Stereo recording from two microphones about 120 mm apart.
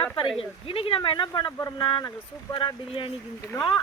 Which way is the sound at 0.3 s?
50° left (ahead or behind).